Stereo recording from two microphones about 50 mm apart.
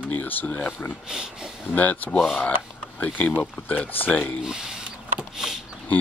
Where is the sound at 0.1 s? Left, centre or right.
Left.